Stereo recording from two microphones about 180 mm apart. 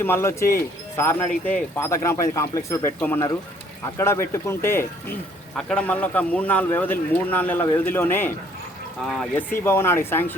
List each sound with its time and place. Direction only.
0.0 s a man's voice: 15° left (ahead or behind)